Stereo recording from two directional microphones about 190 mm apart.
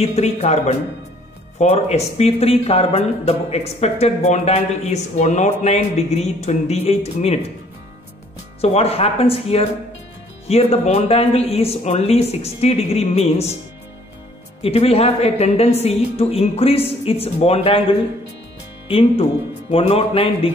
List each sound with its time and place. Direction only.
0.0 s speech: 35° left (ahead or behind)
8.5 s speech: 35° left (ahead or behind)
14.6 s speech: 30° left (ahead or behind)